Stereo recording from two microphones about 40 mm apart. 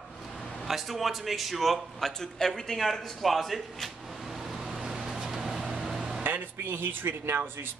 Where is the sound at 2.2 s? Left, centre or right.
Centre.